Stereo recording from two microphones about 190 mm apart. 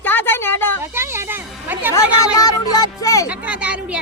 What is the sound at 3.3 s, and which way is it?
Speech, 5° right (ahead or behind).